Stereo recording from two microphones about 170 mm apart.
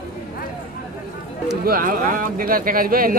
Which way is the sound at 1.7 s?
55° right (ahead or behind).